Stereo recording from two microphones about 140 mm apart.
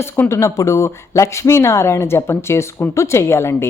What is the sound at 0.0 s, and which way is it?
Speech, 20° left (ahead or behind).